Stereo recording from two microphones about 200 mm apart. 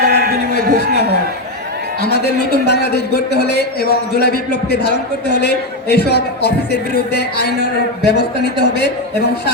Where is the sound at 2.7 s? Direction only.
55° left (ahead or behind).